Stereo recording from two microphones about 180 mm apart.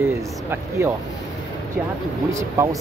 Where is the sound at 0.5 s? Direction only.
10° right (ahead or behind).